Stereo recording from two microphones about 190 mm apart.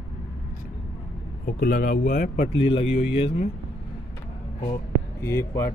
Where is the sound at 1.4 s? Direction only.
50° left (ahead or behind); by 3.4 s 30° left (ahead or behind).